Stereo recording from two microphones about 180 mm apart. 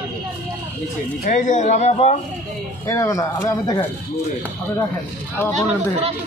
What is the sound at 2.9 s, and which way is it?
Speech, 15° left (ahead or behind).